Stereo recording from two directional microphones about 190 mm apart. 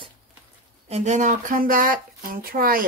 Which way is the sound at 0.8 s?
35° right (ahead or behind).